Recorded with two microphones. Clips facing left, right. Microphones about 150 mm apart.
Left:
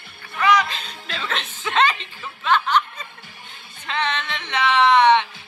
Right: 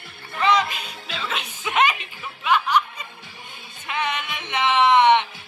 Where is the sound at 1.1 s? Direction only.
5° right (ahead or behind).